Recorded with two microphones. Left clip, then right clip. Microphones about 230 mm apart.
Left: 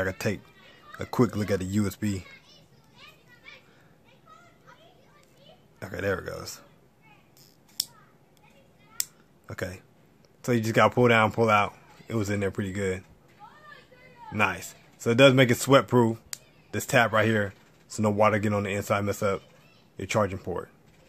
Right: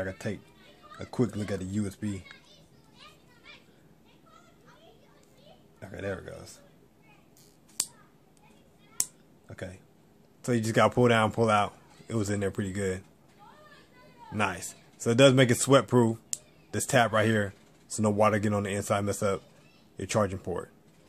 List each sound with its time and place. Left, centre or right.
0.0 s speech: left
5.8 s speech: left
9.5 s speech: left
10.4 s speech: centre
14.3 s speech: centre